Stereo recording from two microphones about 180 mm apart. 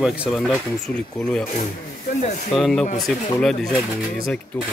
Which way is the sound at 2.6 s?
Centre (ahead or behind).